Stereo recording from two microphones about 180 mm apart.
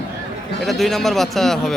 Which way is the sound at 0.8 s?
Centre (ahead or behind).